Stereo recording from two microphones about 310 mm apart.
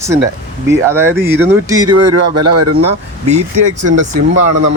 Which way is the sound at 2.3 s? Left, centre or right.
Right.